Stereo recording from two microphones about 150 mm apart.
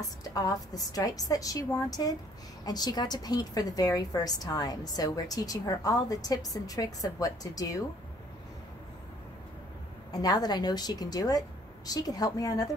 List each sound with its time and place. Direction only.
0.2 s a woman's voice: 25° left (ahead or behind)
10.1 s a woman's voice: 25° left (ahead or behind)